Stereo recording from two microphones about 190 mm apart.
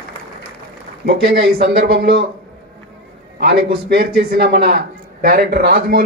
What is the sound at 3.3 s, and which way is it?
A man's voice, 60° right (ahead or behind).